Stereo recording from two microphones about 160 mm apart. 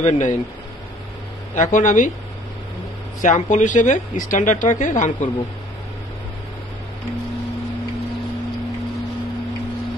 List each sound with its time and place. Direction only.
0.0 s speech: 45° left (ahead or behind)
1.5 s speech: 50° left (ahead or behind)
3.2 s speech: 50° left (ahead or behind)